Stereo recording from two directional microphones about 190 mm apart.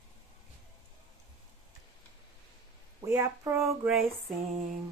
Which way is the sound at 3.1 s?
15° right (ahead or behind).